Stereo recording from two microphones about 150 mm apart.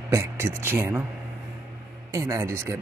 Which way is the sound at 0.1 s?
20° right (ahead or behind).